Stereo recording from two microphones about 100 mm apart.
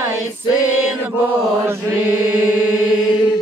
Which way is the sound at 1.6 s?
25° right (ahead or behind).